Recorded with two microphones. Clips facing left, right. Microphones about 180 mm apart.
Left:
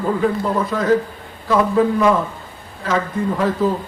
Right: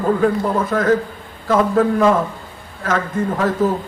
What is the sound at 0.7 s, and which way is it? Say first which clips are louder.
A man's voice: even; 55° right (ahead or behind).